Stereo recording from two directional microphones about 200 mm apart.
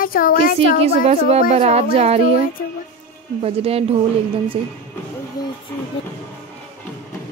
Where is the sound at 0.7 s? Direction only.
30° right (ahead or behind).